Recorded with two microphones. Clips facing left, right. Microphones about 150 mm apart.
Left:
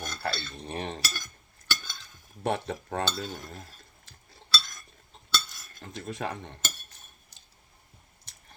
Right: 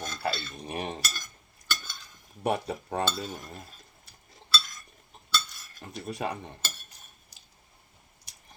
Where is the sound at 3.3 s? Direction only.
5° right (ahead or behind).